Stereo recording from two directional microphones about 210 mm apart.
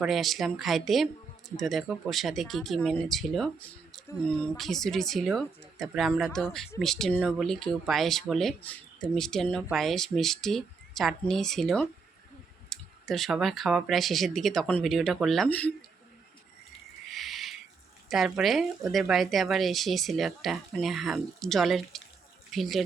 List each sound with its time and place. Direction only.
0.0 s speech: centre (ahead or behind)
17.1 s a sound: centre (ahead or behind)
18.1 s speech: centre (ahead or behind)